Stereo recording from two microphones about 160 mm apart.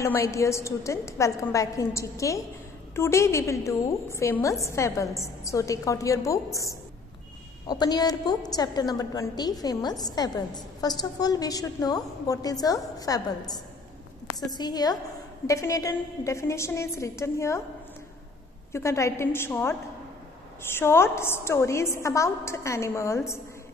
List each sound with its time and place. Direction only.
0.0 s a woman's voice: 20° left (ahead or behind)
14.6 s a woman's voice: 25° left (ahead or behind)
18.7 s a woman's voice: 20° left (ahead or behind)